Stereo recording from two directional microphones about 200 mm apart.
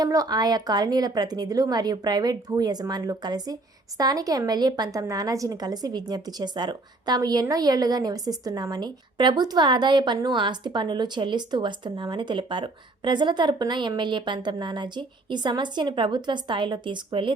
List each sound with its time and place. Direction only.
0.0 s a woman's voice: 20° right (ahead or behind)